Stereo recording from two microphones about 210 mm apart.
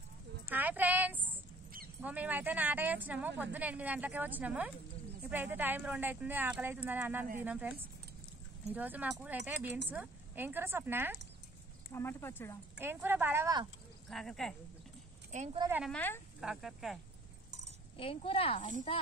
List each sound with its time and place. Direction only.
0.5 s a sound: 10° right (ahead or behind)
2.0 s speech: 10° right (ahead or behind)
11.9 s speech: 10° left (ahead or behind)
12.8 s speech: 10° right (ahead or behind)
14.0 s speech: centre (ahead or behind)
15.3 s speech: 35° right (ahead or behind)
15.8 s speech: 5° left (ahead or behind)
17.9 s speech: 25° left (ahead or behind)